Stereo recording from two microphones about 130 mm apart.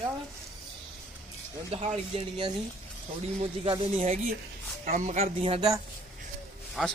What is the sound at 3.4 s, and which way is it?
Speech, 45° right (ahead or behind).